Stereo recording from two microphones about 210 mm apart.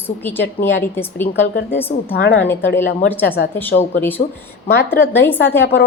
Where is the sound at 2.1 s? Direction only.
55° left (ahead or behind).